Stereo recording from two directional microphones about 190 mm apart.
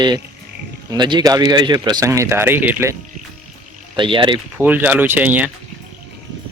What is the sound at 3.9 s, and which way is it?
Speech, 25° right (ahead or behind).